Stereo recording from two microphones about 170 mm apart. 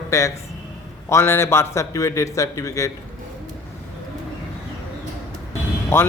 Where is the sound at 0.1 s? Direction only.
20° left (ahead or behind).